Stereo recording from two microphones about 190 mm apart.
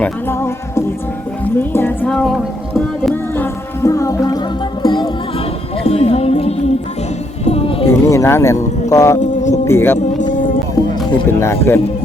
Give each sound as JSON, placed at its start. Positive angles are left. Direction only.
{"t": 0.0, "sound": "speech", "side_deg": 10}
{"t": 1.5, "sound": "music", "side_deg": 10}
{"t": 3.3, "sound": "music", "side_deg": 15}
{"t": 7.9, "sound": "speech", "side_deg": 15}
{"t": 11.3, "sound": "speech", "side_deg": 15}